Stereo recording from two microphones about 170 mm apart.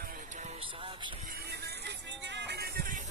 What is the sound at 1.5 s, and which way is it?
Music, 80° right.